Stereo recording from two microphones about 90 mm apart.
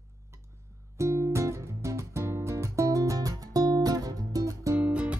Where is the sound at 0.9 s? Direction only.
35° right (ahead or behind).